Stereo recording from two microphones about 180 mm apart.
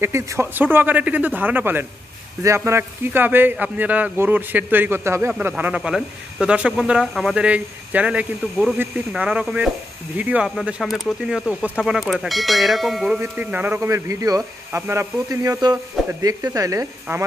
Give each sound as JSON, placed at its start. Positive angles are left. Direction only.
{"t": 0.0, "sound": "speech", "side_deg": -15}